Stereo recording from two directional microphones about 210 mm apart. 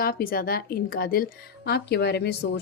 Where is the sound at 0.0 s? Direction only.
45° left (ahead or behind).